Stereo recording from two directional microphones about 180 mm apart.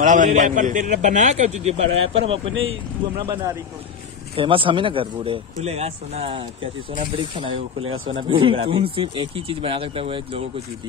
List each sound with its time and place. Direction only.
0.0 s a man's voice: 45° right (ahead or behind)